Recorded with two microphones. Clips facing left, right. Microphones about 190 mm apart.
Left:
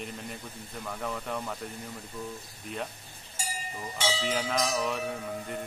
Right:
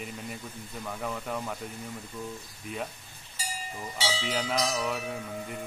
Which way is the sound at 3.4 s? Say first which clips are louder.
Left 1 dB; 50° left (ahead or behind).